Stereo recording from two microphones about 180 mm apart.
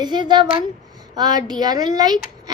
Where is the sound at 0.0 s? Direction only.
25° right (ahead or behind).